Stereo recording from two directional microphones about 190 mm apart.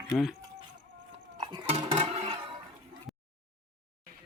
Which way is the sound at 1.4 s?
30° right (ahead or behind).